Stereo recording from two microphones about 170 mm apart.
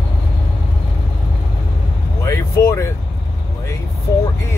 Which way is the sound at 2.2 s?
20° left (ahead or behind).